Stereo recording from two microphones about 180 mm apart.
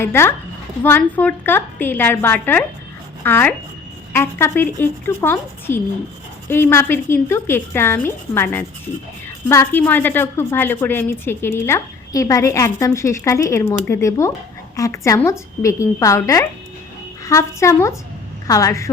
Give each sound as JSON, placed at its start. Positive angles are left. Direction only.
{"t": 0.0, "sound": "a woman's voice", "side_deg": 15}